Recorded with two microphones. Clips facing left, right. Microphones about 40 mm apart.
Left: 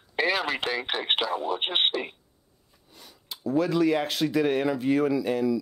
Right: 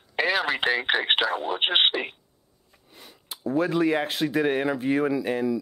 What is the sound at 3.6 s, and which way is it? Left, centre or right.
Speech, right.